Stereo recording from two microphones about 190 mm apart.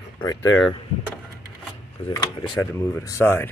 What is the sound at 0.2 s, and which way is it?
Speech, 20° left (ahead or behind).